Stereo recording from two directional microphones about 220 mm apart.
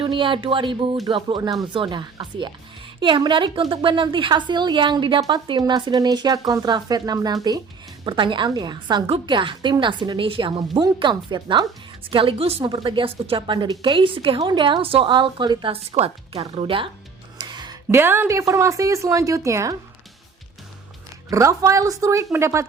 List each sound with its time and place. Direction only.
0.0 s a woman's voice: 20° right (ahead or behind)
17.3 s music: 20° right (ahead or behind)
17.8 s a woman's voice: 10° right (ahead or behind)
21.2 s a woman's voice: 15° right (ahead or behind)